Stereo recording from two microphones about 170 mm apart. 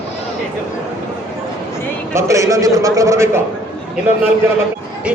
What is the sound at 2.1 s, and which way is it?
A man's voice, 15° right (ahead or behind).